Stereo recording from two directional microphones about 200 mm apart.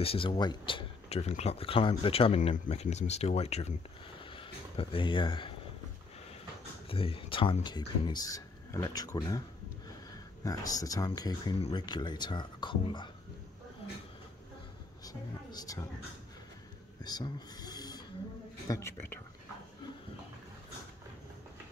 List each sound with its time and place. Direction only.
0.0 s speech: 30° left (ahead or behind)
6.9 s speech: 30° left (ahead or behind)
10.4 s speech: 20° left (ahead or behind)
15.0 s speech: 20° left (ahead or behind)
17.0 s speech: 20° left (ahead or behind)